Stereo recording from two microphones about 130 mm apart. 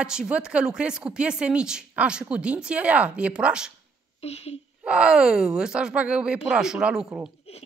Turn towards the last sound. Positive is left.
turn(degrees=-5)  # may be behind; listen again after turning